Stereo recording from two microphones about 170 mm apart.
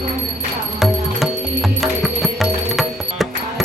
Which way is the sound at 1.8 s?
Centre (ahead or behind).